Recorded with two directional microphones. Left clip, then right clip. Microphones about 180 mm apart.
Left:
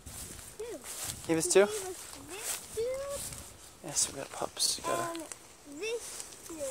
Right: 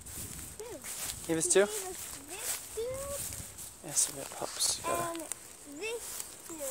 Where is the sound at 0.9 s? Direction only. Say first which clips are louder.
Left 2 dB; 10° left (ahead or behind).